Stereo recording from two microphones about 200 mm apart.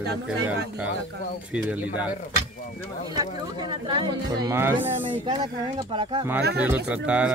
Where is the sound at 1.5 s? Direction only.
5° right (ahead or behind).